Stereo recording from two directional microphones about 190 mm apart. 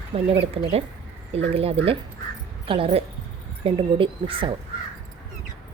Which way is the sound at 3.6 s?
30° right (ahead or behind).